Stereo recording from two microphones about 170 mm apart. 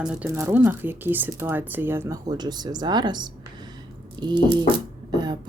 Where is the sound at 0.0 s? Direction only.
5° right (ahead or behind).